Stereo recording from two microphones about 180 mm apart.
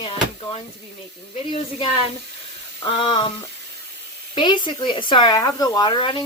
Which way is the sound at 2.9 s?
30° left (ahead or behind).